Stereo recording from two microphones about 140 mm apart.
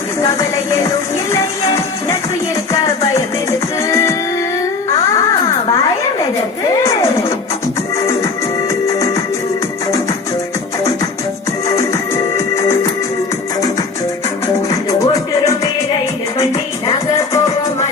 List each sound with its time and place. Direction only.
0.2 s music: 20° left (ahead or behind)
4.9 s a sound: 25° left (ahead or behind)
6.8 s music: 20° left (ahead or behind)
11.8 s music: 20° left (ahead or behind)
14.7 s music: 25° left (ahead or behind)